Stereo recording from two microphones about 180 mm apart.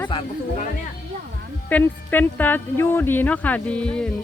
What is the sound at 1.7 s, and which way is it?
Speech, 10° left (ahead or behind).